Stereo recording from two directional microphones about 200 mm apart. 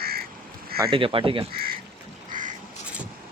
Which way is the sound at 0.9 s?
25° right (ahead or behind).